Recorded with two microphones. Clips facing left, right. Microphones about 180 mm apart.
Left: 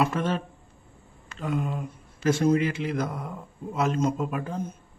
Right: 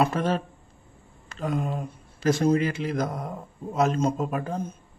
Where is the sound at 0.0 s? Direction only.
40° right (ahead or behind).